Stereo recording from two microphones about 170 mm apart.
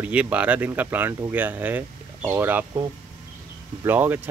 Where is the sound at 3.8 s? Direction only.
10° right (ahead or behind).